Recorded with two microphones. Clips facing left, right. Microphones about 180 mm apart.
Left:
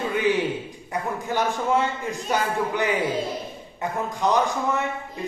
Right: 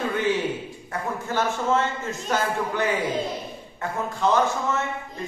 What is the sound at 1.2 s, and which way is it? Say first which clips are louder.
A man's voice: even; 15° left (ahead or behind).